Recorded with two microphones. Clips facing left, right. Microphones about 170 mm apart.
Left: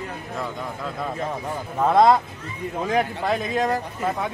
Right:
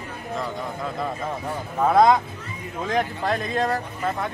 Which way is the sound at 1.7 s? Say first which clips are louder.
Even; centre (ahead or behind).